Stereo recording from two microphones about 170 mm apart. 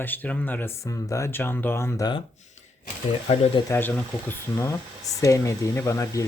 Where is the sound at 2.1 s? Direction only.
45° left (ahead or behind).